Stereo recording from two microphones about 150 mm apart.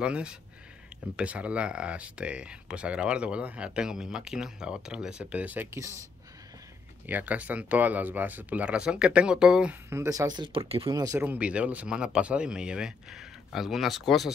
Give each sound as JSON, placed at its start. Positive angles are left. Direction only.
{"t": 0.0, "sound": "speech", "side_deg": -5}
{"t": 7.1, "sound": "speech", "side_deg": -10}
{"t": 9.8, "sound": "speech", "side_deg": -20}
{"t": 10.9, "sound": "speech", "side_deg": -25}
{"t": 11.1, "sound": "speech", "side_deg": -10}